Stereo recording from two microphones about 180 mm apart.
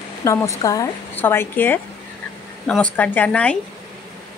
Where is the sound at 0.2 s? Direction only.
15° left (ahead or behind).